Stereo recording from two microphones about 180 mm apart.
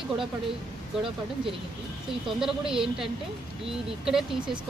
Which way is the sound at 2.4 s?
5° right (ahead or behind).